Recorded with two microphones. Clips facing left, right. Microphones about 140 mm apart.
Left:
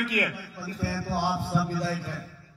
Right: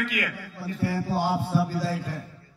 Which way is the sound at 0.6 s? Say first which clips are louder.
Right 4 dB; 20° right (ahead or behind).